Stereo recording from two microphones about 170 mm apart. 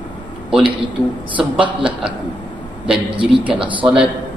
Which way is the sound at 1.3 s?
30° right (ahead or behind).